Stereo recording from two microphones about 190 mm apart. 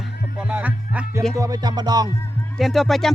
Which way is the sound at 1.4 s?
20° right (ahead or behind).